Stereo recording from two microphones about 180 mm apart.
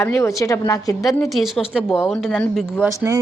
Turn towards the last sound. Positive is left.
turn(degrees=-15)  # may be behind; listen again after turning